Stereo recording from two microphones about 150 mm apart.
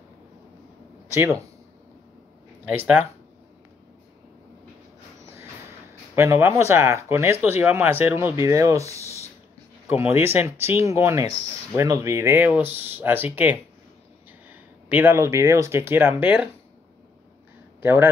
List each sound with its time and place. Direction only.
1.1 s speech: 20° right (ahead or behind)
2.6 s speech: 10° right (ahead or behind)
6.1 s speech: 20° right (ahead or behind)
17.8 s speech: 15° right (ahead or behind)